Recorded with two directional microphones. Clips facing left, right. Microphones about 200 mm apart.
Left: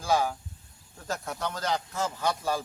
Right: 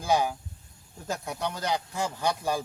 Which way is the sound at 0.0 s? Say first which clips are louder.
Right 1 dB; 15° right (ahead or behind).